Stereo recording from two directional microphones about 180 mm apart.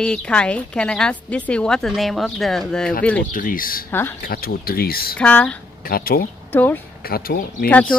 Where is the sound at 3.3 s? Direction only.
50° left (ahead or behind).